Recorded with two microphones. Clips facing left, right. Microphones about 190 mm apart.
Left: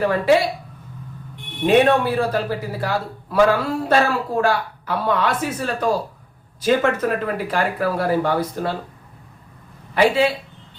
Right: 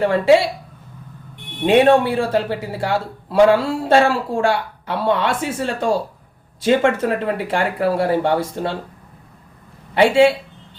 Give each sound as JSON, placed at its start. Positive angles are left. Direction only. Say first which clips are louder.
{"t": 0.0, "sound": "a man's voice", "louder": "right 3 dB", "side_deg": -25}
{"t": 1.6, "sound": "a man's voice", "louder": "right 2 dB", "side_deg": -25}
{"t": 9.9, "sound": "a man's voice", "louder": "right 4 dB", "side_deg": -25}